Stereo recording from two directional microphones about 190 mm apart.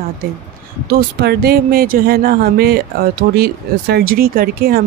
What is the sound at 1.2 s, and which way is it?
Speech, 55° right (ahead or behind).